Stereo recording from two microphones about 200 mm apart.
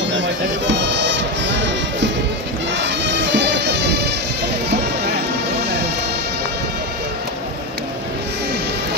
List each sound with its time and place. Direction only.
0.1 s music: 65° right (ahead or behind)